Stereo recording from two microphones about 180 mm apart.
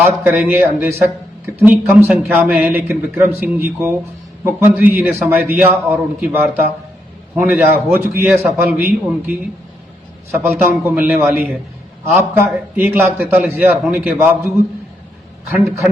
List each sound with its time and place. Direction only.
0.2 s a man's voice: 10° right (ahead or behind)
10.3 s a man's voice: 10° right (ahead or behind)
11.3 s a man's voice: centre (ahead or behind)
12.1 s a man's voice: 10° right (ahead or behind)